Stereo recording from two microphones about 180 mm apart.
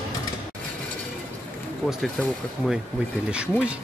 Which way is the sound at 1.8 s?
Centre (ahead or behind).